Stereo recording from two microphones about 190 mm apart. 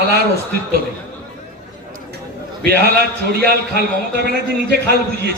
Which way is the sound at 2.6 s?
55° right (ahead or behind).